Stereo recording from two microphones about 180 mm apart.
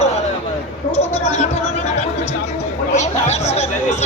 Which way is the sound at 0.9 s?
35° left (ahead or behind).